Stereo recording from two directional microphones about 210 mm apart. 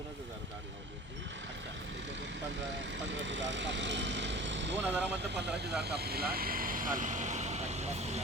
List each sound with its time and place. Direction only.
3.1 s vehicle: 60° right (ahead or behind)
4.8 s speech: 5° right (ahead or behind)
5.8 s speech: 50° right (ahead or behind); by 8.2 s 30° right (ahead or behind)